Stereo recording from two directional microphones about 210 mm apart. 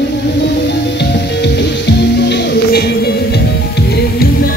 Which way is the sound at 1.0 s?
55° left (ahead or behind).